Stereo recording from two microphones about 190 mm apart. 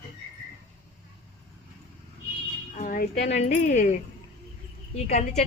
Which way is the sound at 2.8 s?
45° left (ahead or behind).